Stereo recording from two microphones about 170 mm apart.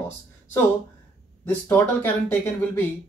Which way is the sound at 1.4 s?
15° left (ahead or behind).